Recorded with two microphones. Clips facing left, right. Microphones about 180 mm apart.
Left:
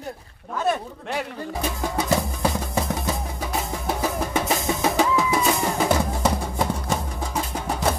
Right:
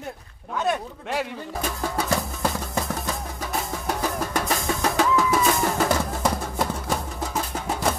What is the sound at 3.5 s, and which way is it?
Music, centre (ahead or behind).